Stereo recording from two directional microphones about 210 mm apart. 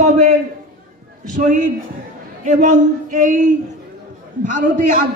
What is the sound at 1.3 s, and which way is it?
A man's voice, 35° right (ahead or behind).